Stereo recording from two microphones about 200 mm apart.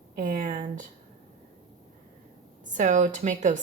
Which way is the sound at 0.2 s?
40° right (ahead or behind).